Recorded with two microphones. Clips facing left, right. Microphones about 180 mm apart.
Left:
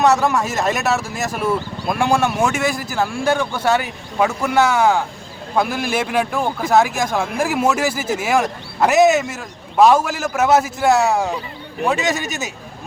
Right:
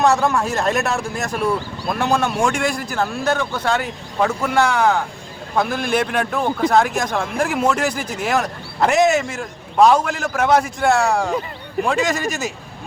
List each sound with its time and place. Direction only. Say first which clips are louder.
0.0 s speech: left 1 dB; centre (ahead or behind)